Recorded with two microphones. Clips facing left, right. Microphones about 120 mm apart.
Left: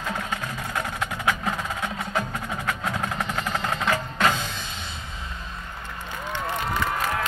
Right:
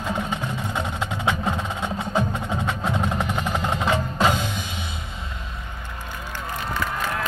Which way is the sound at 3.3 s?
15° right (ahead or behind).